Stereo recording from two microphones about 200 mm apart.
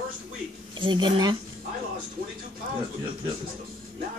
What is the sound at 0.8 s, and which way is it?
Speech, 25° right (ahead or behind).